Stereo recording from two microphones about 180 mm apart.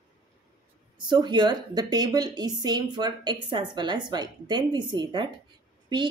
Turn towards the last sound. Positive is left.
turn(degrees=-25)  # may be behind; listen again after turning